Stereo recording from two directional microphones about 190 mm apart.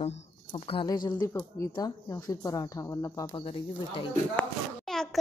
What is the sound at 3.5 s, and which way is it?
Speech, 30° left (ahead or behind).